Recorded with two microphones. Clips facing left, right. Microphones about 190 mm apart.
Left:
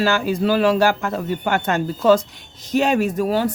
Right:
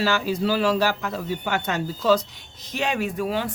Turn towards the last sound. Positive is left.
turn(degrees=40)  # may be behind; listen again after turning